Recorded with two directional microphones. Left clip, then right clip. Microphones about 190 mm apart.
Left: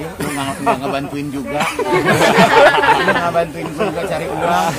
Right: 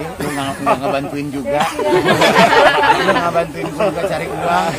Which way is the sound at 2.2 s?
25° right (ahead or behind).